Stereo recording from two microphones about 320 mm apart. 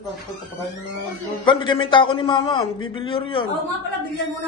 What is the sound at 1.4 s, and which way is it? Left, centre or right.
A man's voice, centre.